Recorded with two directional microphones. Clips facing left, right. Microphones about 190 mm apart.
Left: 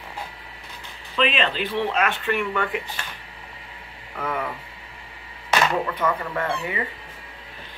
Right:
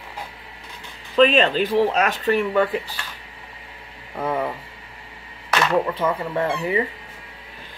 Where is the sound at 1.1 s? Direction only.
40° right (ahead or behind).